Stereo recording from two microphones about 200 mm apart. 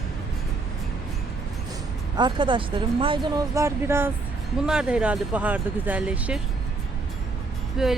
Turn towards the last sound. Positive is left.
turn(degrees=0)  # may be behind; listen again after turning